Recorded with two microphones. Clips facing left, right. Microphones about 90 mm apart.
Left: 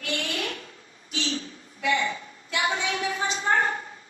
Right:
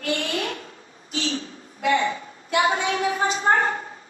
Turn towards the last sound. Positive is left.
turn(degrees=-30)  # may be behind; listen again after turning